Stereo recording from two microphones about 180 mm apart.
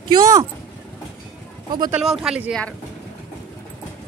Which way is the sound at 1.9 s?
Centre (ahead or behind).